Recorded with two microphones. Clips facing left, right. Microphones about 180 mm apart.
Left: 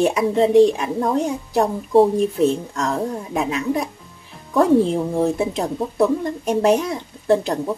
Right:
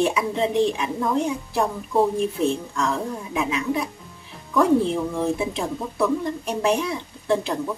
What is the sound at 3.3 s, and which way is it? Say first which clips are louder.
Speech: left 2 dB; 45° left (ahead or behind).